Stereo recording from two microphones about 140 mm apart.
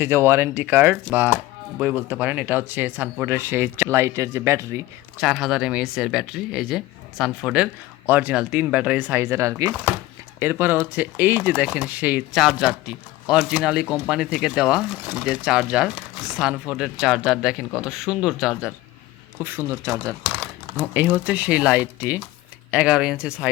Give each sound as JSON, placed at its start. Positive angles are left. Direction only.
{"t": 0.0, "sound": "speech", "side_deg": -15}
{"t": 5.1, "sound": "speech", "side_deg": -5}
{"t": 19.4, "sound": "speech", "side_deg": -15}
{"t": 20.7, "sound": "speech", "side_deg": -15}